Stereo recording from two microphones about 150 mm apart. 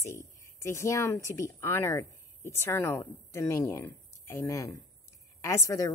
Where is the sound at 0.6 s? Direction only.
20° left (ahead or behind).